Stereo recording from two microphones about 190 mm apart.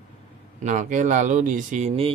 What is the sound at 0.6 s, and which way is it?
Speech, 40° right (ahead or behind).